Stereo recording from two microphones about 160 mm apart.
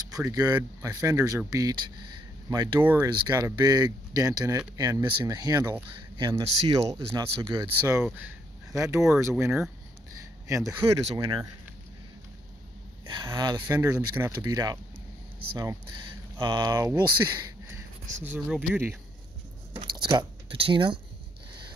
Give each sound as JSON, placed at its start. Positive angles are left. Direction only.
{"t": 0.1, "sound": "speech", "side_deg": -20}
{"t": 2.8, "sound": "speech", "side_deg": -10}
{"t": 3.1, "sound": "speech", "side_deg": -20}
{"t": 6.4, "sound": "speech", "side_deg": -40}
{"t": 6.9, "sound": "speech", "side_deg": -25}
{"t": 7.8, "sound": "speech", "side_deg": -15}
{"t": 10.8, "sound": "speech", "side_deg": -35}
{"t": 13.1, "sound": "speech", "side_deg": -25}
{"t": 18.2, "sound": "speech", "side_deg": -10}
{"t": 19.7, "sound": "speech", "side_deg": -30}